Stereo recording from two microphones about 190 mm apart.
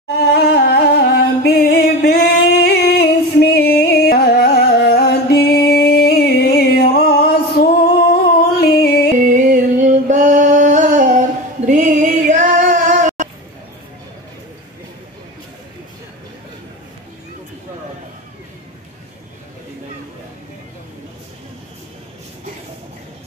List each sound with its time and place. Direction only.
0.3 s music: 55° left (ahead or behind)
9.2 s a sound: 40° right (ahead or behind)
10.0 s music: 40° right (ahead or behind)